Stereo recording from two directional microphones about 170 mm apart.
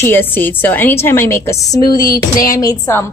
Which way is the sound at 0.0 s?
10° left (ahead or behind).